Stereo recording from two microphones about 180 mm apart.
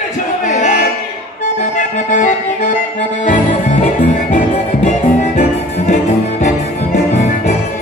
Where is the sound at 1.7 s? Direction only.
45° left (ahead or behind).